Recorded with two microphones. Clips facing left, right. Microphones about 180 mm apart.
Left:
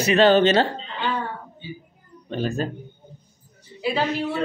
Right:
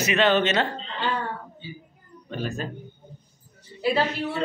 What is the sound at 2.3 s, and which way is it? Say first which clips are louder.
Speech: left 5 dB; 30° left (ahead or behind).